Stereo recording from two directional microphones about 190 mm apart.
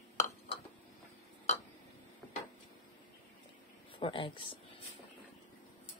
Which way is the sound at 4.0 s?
25° left (ahead or behind).